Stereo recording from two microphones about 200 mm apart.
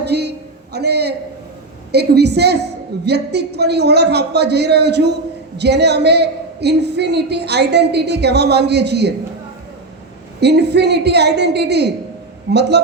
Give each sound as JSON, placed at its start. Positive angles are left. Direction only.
{"t": 0.0, "sound": "a sound", "side_deg": -55}
{"t": 1.9, "sound": "a woman's voice", "side_deg": -55}
{"t": 10.4, "sound": "a woman's voice", "side_deg": -55}